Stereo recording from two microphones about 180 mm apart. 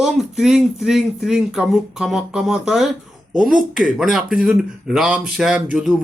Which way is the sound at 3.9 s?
5° right (ahead or behind).